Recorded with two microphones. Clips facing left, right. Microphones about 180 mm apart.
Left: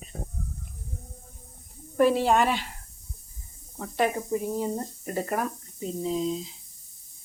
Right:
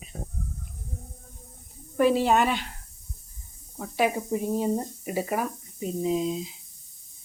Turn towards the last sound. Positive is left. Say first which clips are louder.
# right 2 dB
turn(degrees=-10)  # may be behind; listen again after turning